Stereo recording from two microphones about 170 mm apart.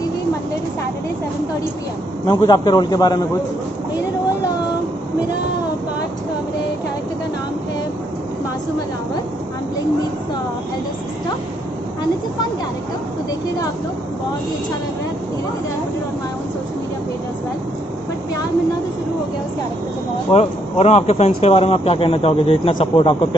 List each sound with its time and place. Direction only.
2.2 s a man's voice: 25° left (ahead or behind)
20.3 s speech: 40° left (ahead or behind)